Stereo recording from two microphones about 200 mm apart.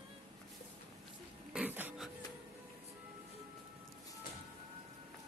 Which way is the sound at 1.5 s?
10° right (ahead or behind).